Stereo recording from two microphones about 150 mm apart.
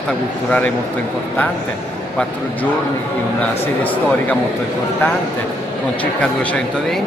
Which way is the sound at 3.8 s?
10° left (ahead or behind).